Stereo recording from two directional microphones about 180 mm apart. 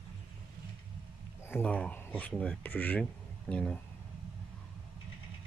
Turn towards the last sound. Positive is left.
turn(degrees=5)  # may be behind; listen again after turning